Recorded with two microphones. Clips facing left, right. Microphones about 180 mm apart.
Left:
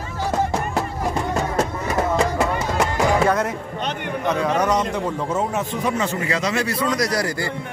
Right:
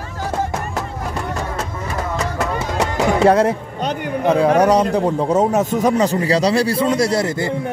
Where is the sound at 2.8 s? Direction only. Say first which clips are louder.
Right 4 dB; 30° right (ahead or behind).